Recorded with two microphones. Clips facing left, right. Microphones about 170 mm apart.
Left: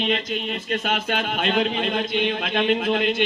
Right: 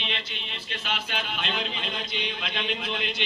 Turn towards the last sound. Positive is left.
turn(degrees=50)  # may be behind; listen again after turning